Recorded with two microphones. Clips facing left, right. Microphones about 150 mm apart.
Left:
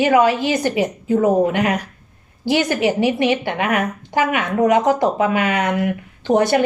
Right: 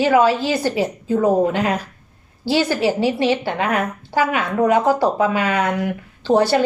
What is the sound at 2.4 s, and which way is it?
A woman's voice, 15° left (ahead or behind).